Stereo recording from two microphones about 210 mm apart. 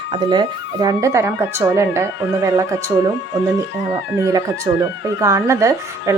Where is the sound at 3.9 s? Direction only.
15° right (ahead or behind).